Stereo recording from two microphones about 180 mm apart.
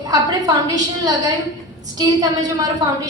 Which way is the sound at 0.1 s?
20° right (ahead or behind).